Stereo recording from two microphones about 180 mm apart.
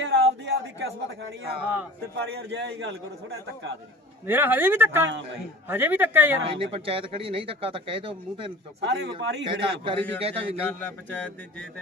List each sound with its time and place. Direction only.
0.0 s a sound: 80° right
1.6 s speech: 10° right (ahead or behind)
2.1 s a man's voice: 65° right (ahead or behind)
4.3 s speech: 10° right (ahead or behind)
6.4 s speech: 30° right (ahead or behind)
8.8 s a man's voice: 75° right (ahead or behind)
9.4 s a man's voice: 25° right (ahead or behind)
10.6 s speech: 10° left (ahead or behind)